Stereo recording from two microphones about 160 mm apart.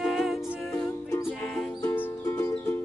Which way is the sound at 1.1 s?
10° left (ahead or behind).